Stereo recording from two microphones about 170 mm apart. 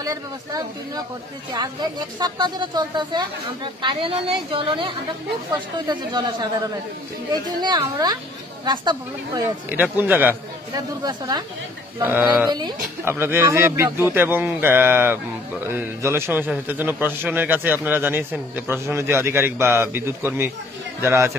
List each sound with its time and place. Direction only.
0.0 s speech: 20° right (ahead or behind)
2.1 s a woman's voice: 25° right (ahead or behind)
7.6 s speech: 25° right (ahead or behind)
9.7 s a man's voice: 10° right (ahead or behind)
10.7 s speech: 25° right (ahead or behind)
12.0 s a man's voice: 10° right (ahead or behind)
12.4 s speech: 25° right (ahead or behind)
13.0 s a man's voice: 15° right (ahead or behind)